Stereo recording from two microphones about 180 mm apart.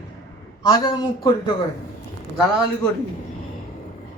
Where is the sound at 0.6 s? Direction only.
25° left (ahead or behind).